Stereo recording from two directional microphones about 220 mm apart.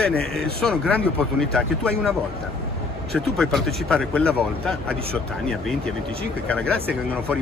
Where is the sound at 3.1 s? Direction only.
Centre (ahead or behind).